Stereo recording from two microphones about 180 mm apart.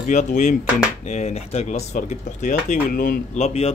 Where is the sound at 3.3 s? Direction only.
35° left (ahead or behind).